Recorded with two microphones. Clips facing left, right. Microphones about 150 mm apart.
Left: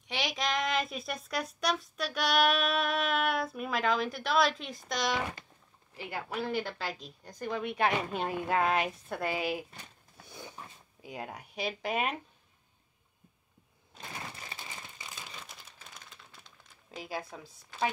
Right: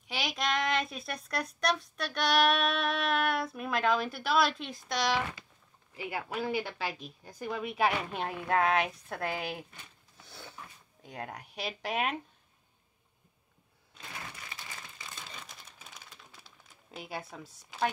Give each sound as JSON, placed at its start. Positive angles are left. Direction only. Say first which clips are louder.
{"t": 0.0, "sound": "speech", "louder": "even", "side_deg": 0}
{"t": 10.2, "sound": "a sound", "louder": "left 2 dB", "side_deg": 15}
{"t": 14.3, "sound": "crumpling", "louder": "left 1 dB", "side_deg": 30}
{"t": 15.0, "sound": "crumpling", "louder": "right 1 dB", "side_deg": 5}